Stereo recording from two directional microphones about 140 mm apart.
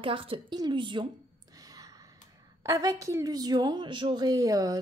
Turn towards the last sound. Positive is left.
turn(degrees=-25)  # may be behind; listen again after turning